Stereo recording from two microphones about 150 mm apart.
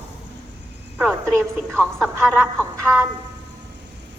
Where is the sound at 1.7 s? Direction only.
5° left (ahead or behind).